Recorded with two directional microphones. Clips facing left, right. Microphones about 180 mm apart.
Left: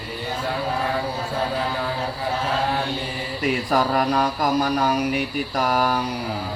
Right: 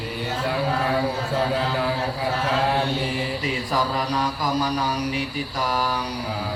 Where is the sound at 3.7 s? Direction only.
55° left (ahead or behind).